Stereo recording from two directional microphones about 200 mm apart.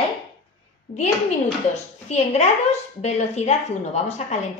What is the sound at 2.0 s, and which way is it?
A woman's voice, 35° left (ahead or behind).